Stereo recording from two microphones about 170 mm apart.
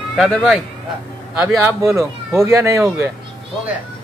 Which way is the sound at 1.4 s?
15° right (ahead or behind).